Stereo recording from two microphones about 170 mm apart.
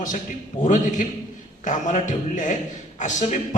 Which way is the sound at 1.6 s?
50° left (ahead or behind).